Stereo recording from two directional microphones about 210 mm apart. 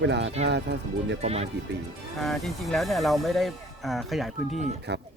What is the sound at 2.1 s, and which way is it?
Speech, centre (ahead or behind).